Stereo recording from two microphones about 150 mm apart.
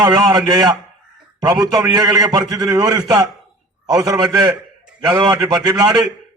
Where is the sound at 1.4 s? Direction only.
25° right (ahead or behind).